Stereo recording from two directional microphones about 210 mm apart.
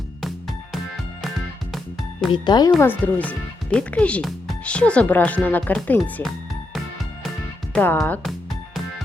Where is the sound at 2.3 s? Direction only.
20° left (ahead or behind).